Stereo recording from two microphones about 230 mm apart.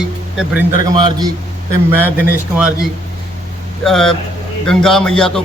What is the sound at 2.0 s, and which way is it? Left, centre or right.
Speech, centre.